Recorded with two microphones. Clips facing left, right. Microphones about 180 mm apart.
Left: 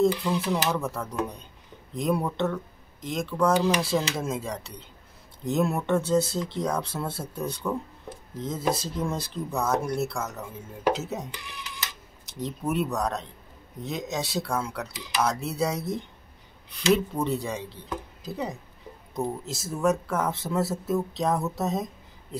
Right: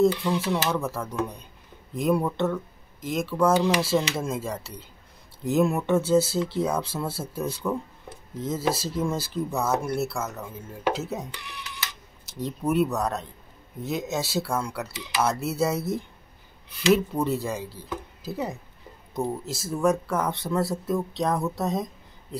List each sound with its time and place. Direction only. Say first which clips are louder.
0.0 s speech: right 2 dB; centre (ahead or behind)
12.3 s speech: right 3 dB; centre (ahead or behind)